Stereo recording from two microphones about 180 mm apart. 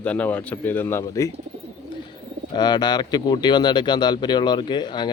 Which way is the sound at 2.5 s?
25° left (ahead or behind).